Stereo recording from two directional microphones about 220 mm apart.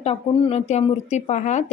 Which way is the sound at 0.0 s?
25° left (ahead or behind).